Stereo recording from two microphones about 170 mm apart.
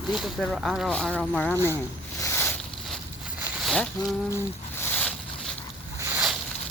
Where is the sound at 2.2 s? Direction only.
15° left (ahead or behind).